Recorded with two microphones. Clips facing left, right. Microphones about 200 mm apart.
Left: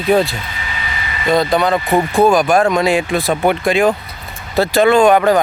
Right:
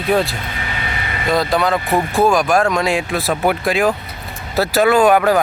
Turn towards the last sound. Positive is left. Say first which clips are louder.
# left 2 dB
turn(degrees=-5)  # may be behind; listen again after turning